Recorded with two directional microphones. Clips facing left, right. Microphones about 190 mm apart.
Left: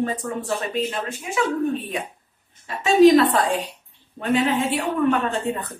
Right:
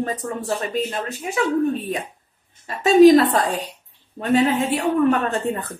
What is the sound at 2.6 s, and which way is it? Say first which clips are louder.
Speech: right 3 dB; 40° right (ahead or behind).